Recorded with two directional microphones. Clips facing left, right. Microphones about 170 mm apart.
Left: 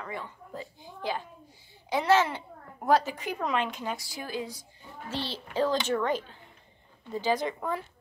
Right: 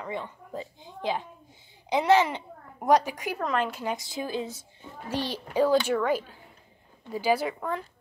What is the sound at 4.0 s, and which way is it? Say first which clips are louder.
A child's voice: right 4 dB; 20° right (ahead or behind).